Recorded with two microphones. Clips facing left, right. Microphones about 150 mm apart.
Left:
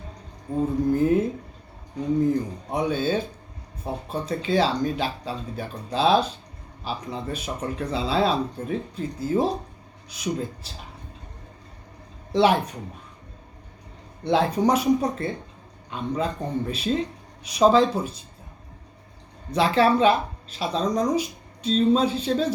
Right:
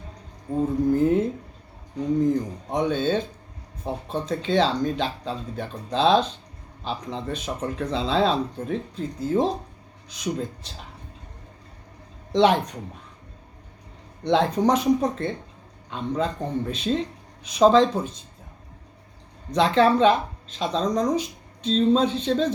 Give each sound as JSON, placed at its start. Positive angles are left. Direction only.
{"t": 0.9, "sound": "speech", "side_deg": 10}
{"t": 12.3, "sound": "speech", "side_deg": 5}
{"t": 14.3, "sound": "speech", "side_deg": 5}
{"t": 19.5, "sound": "speech", "side_deg": 5}